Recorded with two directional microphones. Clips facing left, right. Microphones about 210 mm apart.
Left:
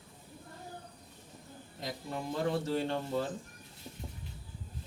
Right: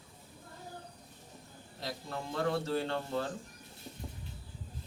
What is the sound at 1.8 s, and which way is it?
Speech, 15° left (ahead or behind).